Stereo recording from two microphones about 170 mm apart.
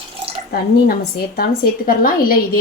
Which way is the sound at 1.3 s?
60° left (ahead or behind).